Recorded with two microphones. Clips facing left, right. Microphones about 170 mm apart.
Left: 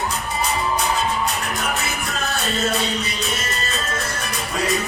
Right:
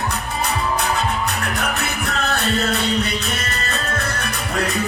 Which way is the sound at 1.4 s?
65° right (ahead or behind).